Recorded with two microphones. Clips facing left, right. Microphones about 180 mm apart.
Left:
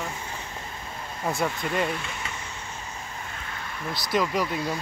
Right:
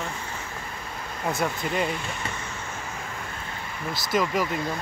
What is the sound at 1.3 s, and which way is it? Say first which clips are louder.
Speech: even; centre (ahead or behind).